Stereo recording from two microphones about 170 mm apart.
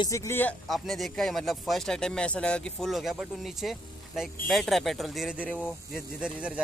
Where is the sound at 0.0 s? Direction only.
20° left (ahead or behind).